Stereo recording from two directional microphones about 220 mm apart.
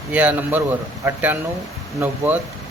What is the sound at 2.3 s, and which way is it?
Speech, 10° right (ahead or behind).